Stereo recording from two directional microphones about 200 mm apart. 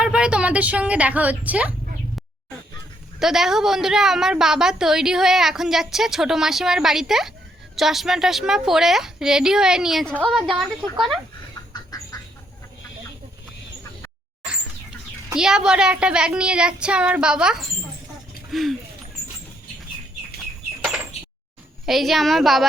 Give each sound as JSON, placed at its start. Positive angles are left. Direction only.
{"t": 0.0, "sound": "a woman's voice", "side_deg": -5}
{"t": 3.2, "sound": "a woman's voice", "side_deg": 0}
{"t": 11.7, "sound": "duck", "side_deg": 20}
{"t": 15.4, "sound": "a woman's voice", "side_deg": -5}
{"t": 20.8, "sound": "door", "side_deg": -5}
{"t": 21.8, "sound": "a woman's voice", "side_deg": 0}